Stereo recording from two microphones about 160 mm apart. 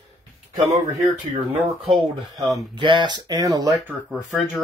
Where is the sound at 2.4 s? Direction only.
25° right (ahead or behind).